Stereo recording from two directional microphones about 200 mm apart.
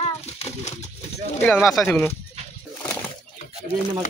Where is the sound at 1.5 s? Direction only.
Centre (ahead or behind).